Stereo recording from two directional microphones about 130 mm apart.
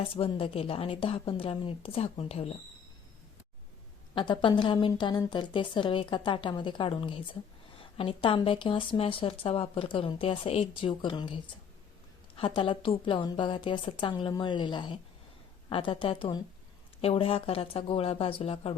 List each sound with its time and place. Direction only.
0.1 s speech: 45° left (ahead or behind)
4.1 s a woman's voice: 40° left (ahead or behind)
12.4 s a woman's voice: 40° left (ahead or behind)